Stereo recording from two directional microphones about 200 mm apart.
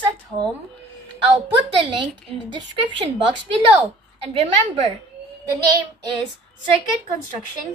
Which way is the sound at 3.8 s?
25° right (ahead or behind).